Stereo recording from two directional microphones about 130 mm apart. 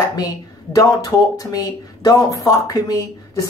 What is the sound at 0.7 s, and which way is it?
Speech, 30° left (ahead or behind).